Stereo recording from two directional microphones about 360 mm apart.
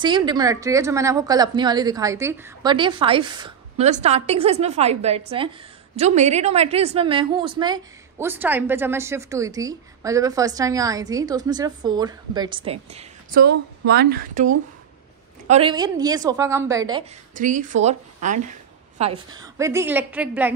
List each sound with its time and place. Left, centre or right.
0.0 s a woman's voice: centre
17.4 s a woman's voice: right; by 20.5 s centre